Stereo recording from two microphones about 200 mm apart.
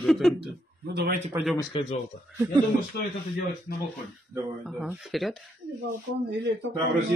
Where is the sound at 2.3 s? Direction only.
15° right (ahead or behind).